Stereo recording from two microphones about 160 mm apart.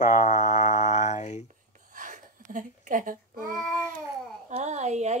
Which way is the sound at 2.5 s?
55° right (ahead or behind).